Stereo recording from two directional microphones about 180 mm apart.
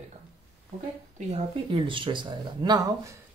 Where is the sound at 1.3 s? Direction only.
30° right (ahead or behind).